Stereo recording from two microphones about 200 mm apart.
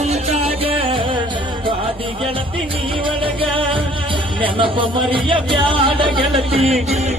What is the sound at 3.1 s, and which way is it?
Music, 25° right (ahead or behind).